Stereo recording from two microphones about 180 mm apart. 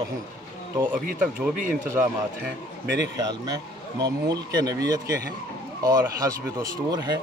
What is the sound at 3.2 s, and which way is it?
Speech, 20° right (ahead or behind).